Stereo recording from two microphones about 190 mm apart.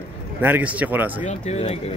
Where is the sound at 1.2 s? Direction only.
35° left (ahead or behind).